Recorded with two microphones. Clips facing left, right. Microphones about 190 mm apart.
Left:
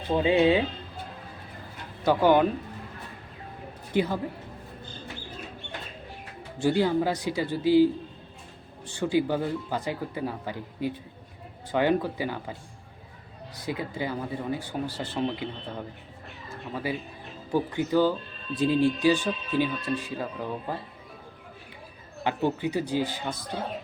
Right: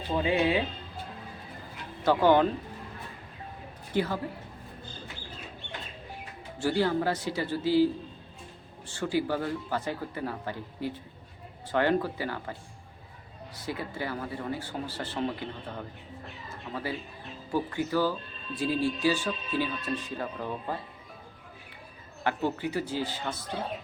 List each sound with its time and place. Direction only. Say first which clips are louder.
0.2 s speech: left 5 dB; 20° left (ahead or behind)
2.0 s speech: left 1 dB; 15° left (ahead or behind)
3.9 s speech: left 3 dB; 15° left (ahead or behind)
6.6 s speech: left 3 dB; 15° left (ahead or behind)
8.9 s speech: left 4 dB; 15° left (ahead or behind)
13.6 s speech: left 3 dB; 15° left (ahead or behind)
16.7 s speech: left 3 dB; 15° left (ahead or behind)
22.2 s speech: left 3 dB; 15° left (ahead or behind)